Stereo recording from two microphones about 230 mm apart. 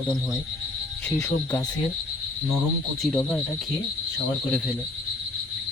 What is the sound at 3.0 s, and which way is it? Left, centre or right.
Speech, centre.